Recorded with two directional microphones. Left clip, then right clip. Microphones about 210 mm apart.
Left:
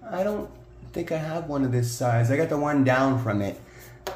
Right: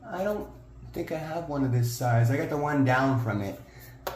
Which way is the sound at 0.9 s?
35° left (ahead or behind).